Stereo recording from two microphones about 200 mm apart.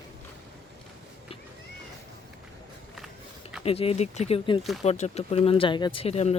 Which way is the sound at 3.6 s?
30° left (ahead or behind).